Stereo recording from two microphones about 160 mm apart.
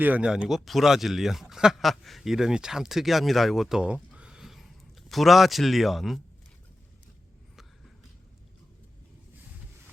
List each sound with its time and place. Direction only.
0.0 s speech: 10° right (ahead or behind)